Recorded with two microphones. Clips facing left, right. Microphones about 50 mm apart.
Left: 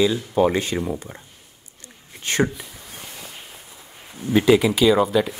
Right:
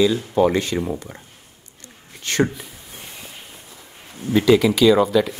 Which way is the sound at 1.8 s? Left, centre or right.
Centre.